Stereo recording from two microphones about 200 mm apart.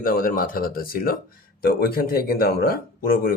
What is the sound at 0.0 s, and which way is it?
A man's voice, 45° left (ahead or behind).